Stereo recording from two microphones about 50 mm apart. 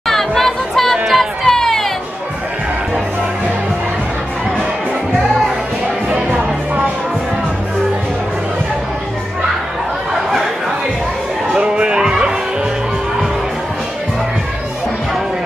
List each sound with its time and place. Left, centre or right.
0.0 s chatter: centre
1.0 s a sound: centre
6.0 s music: centre
11.5 s music: right